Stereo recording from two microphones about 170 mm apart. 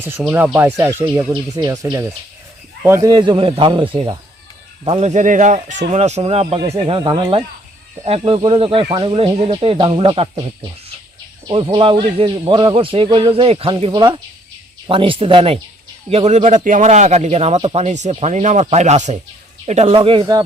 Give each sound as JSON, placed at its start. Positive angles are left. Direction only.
{"t": 0.0, "sound": "a man's voice", "side_deg": -10}
{"t": 11.4, "sound": "a man's voice", "side_deg": -30}